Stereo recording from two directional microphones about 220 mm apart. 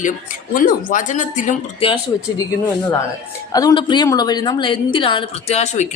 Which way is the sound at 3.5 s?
15° left (ahead or behind).